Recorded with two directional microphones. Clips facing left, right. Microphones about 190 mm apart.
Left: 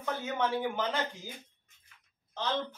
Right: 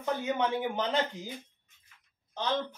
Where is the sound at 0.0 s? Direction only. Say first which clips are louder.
Right 3 dB; 20° right (ahead or behind).